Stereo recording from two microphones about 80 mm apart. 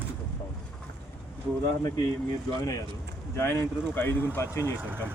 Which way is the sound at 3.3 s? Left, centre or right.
Left.